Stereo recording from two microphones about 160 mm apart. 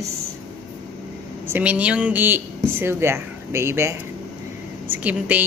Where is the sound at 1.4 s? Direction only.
10° right (ahead or behind).